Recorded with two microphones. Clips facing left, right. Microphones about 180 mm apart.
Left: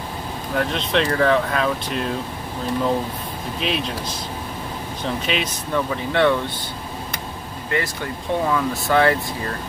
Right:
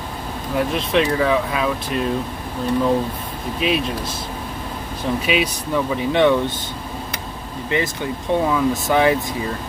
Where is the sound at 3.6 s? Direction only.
5° right (ahead or behind).